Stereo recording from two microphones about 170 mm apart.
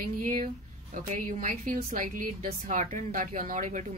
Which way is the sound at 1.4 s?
50° right (ahead or behind).